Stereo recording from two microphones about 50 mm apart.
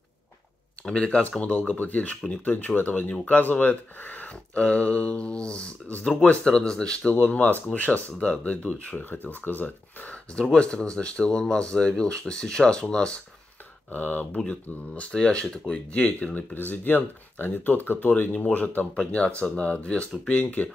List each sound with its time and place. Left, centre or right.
0.8 s speech: centre
1.4 s speech: left
2.5 s speech: left
8.2 s speech: left
10.5 s speech: centre
13.8 s speech: left
14.4 s speech: centre
15.9 s speech: left
18.9 s speech: left